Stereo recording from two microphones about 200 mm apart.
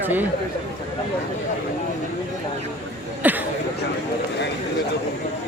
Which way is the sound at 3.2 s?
10° right (ahead or behind).